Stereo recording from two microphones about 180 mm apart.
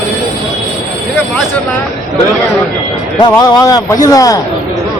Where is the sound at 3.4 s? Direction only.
20° left (ahead or behind).